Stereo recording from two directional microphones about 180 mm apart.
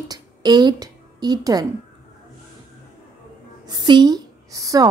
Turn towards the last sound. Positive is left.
turn(degrees=-20)  # may be behind; listen again after turning